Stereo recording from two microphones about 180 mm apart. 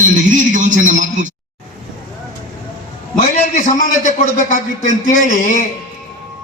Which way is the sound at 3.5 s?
45° left (ahead or behind).